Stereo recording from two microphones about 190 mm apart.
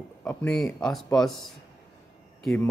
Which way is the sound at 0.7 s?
Centre (ahead or behind).